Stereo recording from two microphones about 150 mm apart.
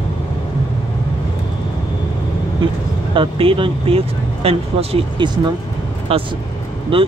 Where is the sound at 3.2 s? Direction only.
35° right (ahead or behind).